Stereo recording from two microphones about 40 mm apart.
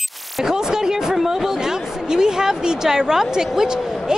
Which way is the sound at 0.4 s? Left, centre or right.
Centre.